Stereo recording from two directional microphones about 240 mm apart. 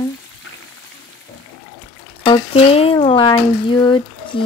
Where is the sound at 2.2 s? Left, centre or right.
Left.